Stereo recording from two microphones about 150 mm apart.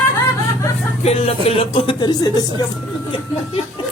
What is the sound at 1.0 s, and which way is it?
Speech, 45° left (ahead or behind).